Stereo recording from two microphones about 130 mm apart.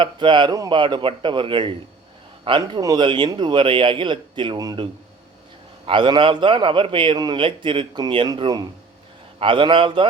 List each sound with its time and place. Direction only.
0.0 s a man's voice: 40° right (ahead or behind)